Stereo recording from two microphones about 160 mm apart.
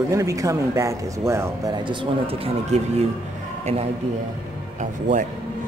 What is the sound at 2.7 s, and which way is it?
Speech, 45° right (ahead or behind).